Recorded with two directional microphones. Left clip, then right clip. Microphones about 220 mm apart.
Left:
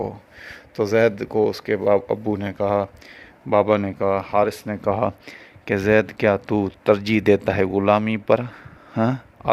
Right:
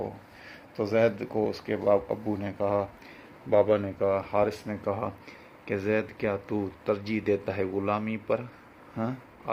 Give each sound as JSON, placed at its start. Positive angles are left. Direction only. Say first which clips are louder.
{"t": 0.0, "sound": "speech", "louder": "left 7 dB", "side_deg": 55}